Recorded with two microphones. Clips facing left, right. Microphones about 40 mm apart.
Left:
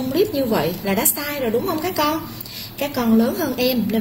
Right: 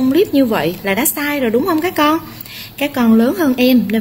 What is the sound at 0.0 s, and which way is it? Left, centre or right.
A woman's voice, right.